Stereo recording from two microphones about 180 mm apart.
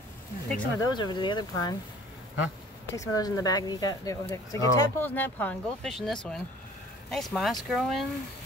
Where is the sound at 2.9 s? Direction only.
20° left (ahead or behind); by 8.0 s centre (ahead or behind).